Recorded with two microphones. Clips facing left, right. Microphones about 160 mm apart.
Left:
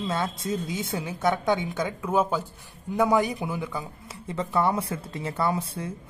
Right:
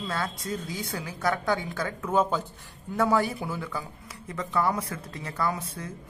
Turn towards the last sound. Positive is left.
turn(degrees=30)  # may be behind; listen again after turning